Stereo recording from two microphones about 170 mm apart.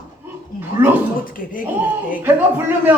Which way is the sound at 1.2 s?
55° left (ahead or behind).